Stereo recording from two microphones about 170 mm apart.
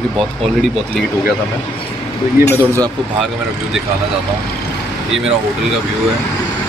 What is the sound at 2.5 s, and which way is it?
Speech, 20° right (ahead or behind).